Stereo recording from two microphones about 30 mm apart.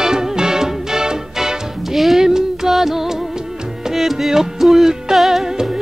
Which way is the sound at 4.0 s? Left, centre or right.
Centre.